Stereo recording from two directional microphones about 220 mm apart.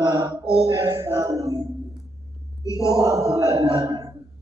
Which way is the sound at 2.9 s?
15° right (ahead or behind).